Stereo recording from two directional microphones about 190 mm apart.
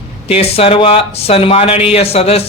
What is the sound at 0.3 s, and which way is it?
Speech, 30° left (ahead or behind).